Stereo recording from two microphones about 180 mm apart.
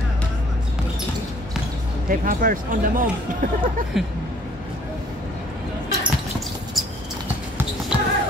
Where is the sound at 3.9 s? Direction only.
Centre (ahead or behind).